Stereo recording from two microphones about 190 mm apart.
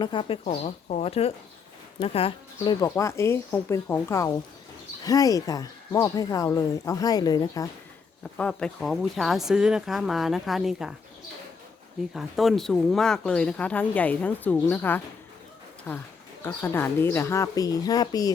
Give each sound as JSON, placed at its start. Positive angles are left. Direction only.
{"t": 0.0, "sound": "speech", "side_deg": 25}
{"t": 2.8, "sound": "speech", "side_deg": 15}
{"t": 8.2, "sound": "speech", "side_deg": 5}
{"t": 12.1, "sound": "speech", "side_deg": 0}